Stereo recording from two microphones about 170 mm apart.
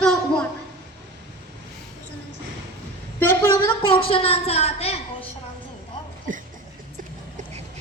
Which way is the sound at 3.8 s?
30° left (ahead or behind).